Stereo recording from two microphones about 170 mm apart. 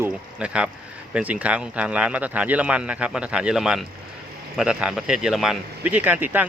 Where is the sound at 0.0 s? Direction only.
5° right (ahead or behind).